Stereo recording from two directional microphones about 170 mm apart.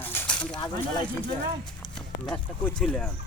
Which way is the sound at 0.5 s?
25° left (ahead or behind).